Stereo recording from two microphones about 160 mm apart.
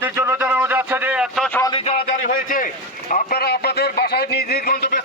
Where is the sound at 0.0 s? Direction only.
15° right (ahead or behind).